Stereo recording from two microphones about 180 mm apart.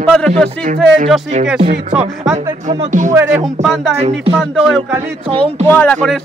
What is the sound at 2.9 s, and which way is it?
Speech, 45° right (ahead or behind).